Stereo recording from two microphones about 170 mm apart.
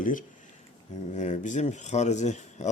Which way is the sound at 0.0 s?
50° left (ahead or behind).